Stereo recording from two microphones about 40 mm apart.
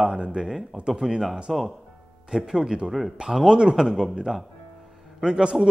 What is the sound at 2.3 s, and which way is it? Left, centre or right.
A man's voice, centre.